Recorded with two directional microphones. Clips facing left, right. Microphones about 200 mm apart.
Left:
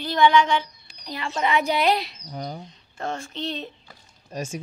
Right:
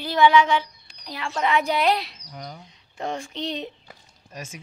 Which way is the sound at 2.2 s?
30° left (ahead or behind).